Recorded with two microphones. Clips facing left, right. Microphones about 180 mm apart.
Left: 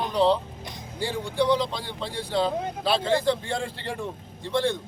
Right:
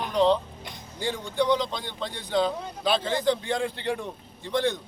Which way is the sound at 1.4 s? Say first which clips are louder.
Left 2 dB; 5° left (ahead or behind).